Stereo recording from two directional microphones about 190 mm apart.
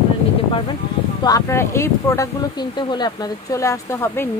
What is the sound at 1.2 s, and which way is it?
Speech, 15° left (ahead or behind).